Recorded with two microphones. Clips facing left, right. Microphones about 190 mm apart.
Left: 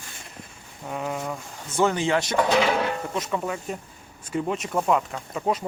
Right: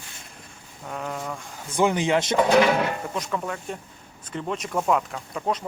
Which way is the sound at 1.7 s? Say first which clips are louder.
Right 1 dB; 15° right (ahead or behind).